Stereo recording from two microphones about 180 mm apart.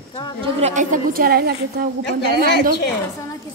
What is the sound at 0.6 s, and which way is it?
Speech, 45° right (ahead or behind).